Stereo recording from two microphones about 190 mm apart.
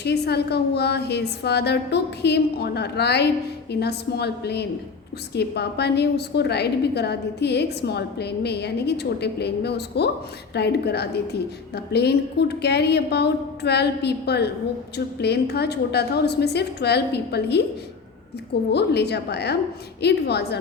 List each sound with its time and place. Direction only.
0.0 s a woman's voice: 60° left (ahead or behind)
18.7 s a woman's voice: 60° left (ahead or behind)